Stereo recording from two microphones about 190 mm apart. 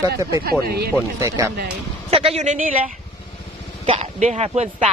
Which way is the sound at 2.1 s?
30° right (ahead or behind).